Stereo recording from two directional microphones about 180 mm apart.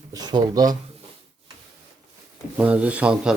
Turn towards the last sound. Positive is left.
turn(degrees=-5)  # may be behind; listen again after turning